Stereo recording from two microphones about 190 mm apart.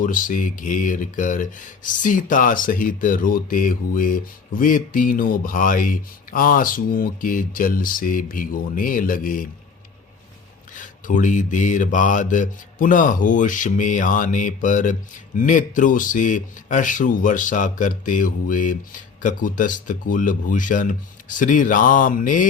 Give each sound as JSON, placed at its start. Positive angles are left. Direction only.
{"t": 0.0, "sound": "speech", "side_deg": 45}
{"t": 10.8, "sound": "speech", "side_deg": 45}